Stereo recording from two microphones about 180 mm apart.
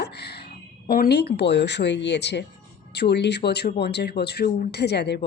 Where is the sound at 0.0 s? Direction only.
65° left (ahead or behind).